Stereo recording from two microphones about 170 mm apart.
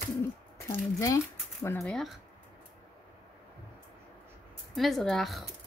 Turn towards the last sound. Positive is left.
turn(degrees=0)  # may be behind; listen again after turning